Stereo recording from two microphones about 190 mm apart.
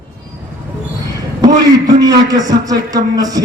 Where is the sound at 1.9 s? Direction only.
20° right (ahead or behind).